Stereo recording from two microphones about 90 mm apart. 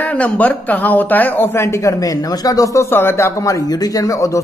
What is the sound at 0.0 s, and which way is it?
Speech, 15° left (ahead or behind).